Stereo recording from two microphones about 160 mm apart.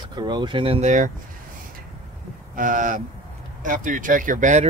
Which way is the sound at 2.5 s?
55° right (ahead or behind).